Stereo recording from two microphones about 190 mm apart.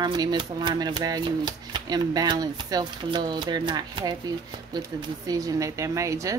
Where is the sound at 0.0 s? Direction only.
20° right (ahead or behind).